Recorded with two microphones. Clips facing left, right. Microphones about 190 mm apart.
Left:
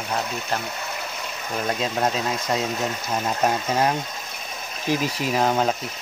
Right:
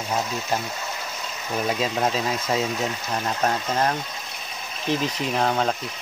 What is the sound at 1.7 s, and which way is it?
Speech, centre (ahead or behind).